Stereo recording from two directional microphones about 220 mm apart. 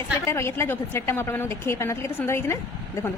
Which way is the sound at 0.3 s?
10° left (ahead or behind).